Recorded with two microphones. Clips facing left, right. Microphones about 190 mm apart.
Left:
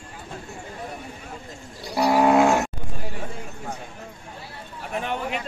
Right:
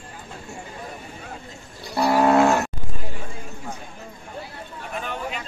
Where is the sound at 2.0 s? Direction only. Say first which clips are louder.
Even; 10° left (ahead or behind).